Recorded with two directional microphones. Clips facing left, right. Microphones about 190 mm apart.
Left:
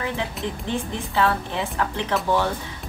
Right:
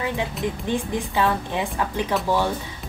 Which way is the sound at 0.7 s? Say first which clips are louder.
Right 3 dB; 15° right (ahead or behind).